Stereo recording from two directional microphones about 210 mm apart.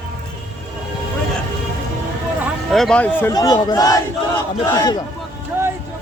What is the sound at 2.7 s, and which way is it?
Speech, 5° left (ahead or behind).